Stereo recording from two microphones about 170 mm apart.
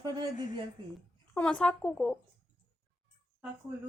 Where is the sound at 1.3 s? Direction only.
5° left (ahead or behind).